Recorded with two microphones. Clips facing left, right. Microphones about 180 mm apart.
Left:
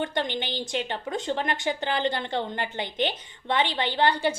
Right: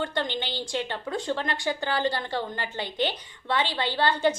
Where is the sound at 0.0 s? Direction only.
15° left (ahead or behind).